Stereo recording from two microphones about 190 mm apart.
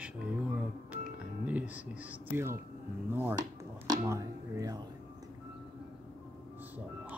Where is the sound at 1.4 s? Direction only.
10° right (ahead or behind).